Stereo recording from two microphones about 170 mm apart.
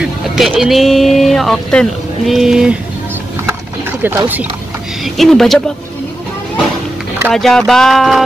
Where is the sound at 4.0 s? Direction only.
10° right (ahead or behind).